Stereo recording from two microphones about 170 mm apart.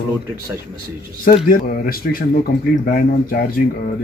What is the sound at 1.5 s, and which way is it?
Speech, 50° left (ahead or behind).